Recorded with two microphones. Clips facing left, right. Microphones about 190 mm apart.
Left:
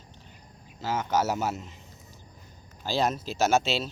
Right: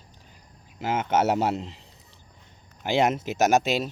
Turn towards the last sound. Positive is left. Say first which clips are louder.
# right 3 dB
turn(degrees=-15)  # may be behind; listen again after turning